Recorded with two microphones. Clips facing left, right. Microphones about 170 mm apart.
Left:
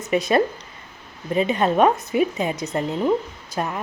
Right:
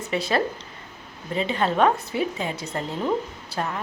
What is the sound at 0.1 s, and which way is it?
A woman's voice, 15° left (ahead or behind).